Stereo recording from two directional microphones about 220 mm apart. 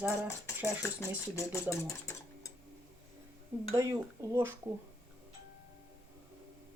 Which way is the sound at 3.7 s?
15° right (ahead or behind).